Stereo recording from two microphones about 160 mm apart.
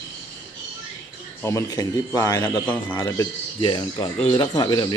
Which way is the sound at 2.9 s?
25° left (ahead or behind).